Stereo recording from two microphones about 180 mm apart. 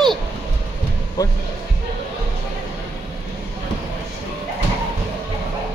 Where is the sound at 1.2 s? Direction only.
20° left (ahead or behind).